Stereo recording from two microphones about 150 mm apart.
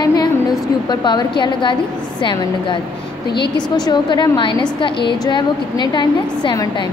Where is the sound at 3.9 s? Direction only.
30° left (ahead or behind).